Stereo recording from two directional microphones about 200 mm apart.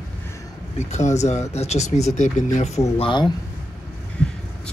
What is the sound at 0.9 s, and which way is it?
Speech, 35° left (ahead or behind).